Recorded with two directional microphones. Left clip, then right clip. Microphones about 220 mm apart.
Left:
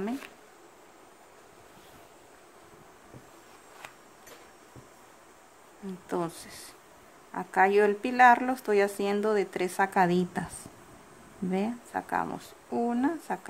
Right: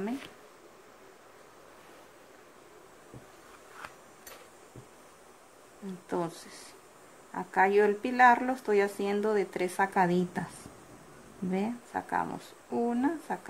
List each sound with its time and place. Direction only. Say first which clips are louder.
6.0 s speech: left 1 dB; 10° left (ahead or behind)
7.3 s speech: left 2 dB; 10° left (ahead or behind)
11.5 s speech: left 2 dB; 10° left (ahead or behind)